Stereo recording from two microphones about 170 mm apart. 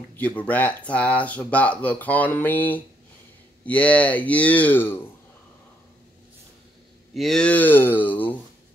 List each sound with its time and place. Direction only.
0.1 s speech: 10° left (ahead or behind)
7.2 s speech: 5° left (ahead or behind)